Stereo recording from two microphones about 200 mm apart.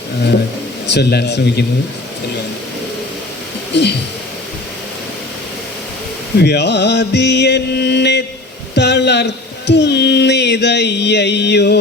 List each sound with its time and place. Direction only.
0.9 s speech: 55° left (ahead or behind)
3.7 s speech: 60° left (ahead or behind)
6.4 s speech: 60° left (ahead or behind)